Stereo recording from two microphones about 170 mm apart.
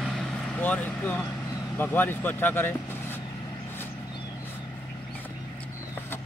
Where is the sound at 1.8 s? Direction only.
10° left (ahead or behind).